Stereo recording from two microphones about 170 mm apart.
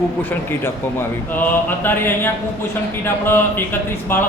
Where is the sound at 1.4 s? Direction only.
10° left (ahead or behind).